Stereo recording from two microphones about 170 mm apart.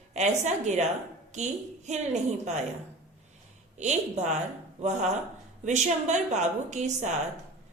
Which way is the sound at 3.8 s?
45° right (ahead or behind).